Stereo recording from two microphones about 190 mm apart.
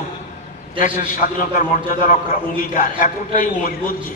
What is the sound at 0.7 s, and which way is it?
A man's voice, 45° left (ahead or behind).